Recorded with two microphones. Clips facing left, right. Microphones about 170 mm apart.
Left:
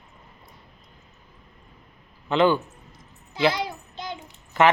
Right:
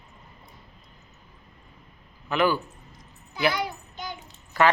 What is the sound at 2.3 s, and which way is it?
Speech, 25° left (ahead or behind).